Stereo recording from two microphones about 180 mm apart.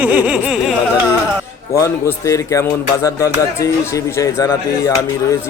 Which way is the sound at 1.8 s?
15° left (ahead or behind).